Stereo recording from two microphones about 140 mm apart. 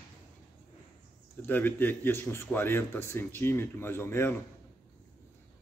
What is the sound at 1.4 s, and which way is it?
Speech, 15° left (ahead or behind).